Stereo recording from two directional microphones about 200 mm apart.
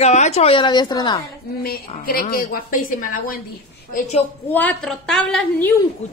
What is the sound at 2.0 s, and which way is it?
A woman's voice, 45° left (ahead or behind).